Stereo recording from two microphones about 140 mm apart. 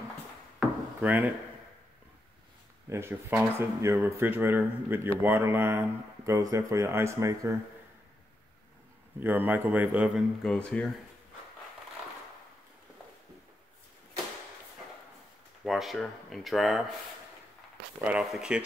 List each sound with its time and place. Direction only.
0.6 s wood: 10° right (ahead or behind)
2.9 s speech: 20° right (ahead or behind)
9.2 s speech: 15° right (ahead or behind)
10.4 s speech: 5° left (ahead or behind)
15.6 s speech: centre (ahead or behind)
17.9 s speech: 10° right (ahead or behind)